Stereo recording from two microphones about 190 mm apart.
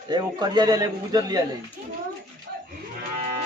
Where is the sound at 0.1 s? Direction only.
20° right (ahead or behind).